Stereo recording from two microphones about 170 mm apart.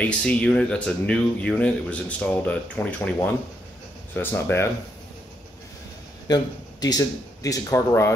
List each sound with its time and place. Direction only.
0.0 s speech: 5° left (ahead or behind)
6.2 s speech: 25° left (ahead or behind)